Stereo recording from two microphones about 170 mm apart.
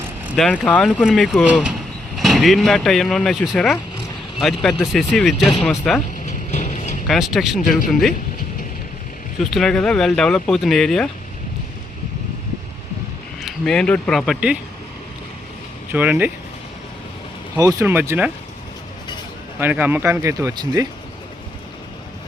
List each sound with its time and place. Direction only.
0.3 s speech: 5° left (ahead or behind)
6.2 s a sound: 45° left (ahead or behind)
7.1 s speech: centre (ahead or behind)
7.6 s speech: 55° left (ahead or behind)
9.4 s speech: centre (ahead or behind)
13.4 s speech: 5° left (ahead or behind)
15.9 s speech: 10° right (ahead or behind)
17.6 s speech: 20° right (ahead or behind)
19.5 s speech: 10° right (ahead or behind)